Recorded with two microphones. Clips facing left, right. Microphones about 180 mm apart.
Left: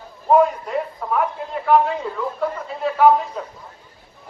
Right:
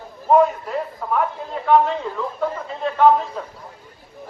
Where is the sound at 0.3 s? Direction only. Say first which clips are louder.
Even; centre (ahead or behind).